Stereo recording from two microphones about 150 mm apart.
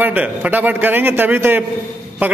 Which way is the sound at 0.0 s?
10° right (ahead or behind).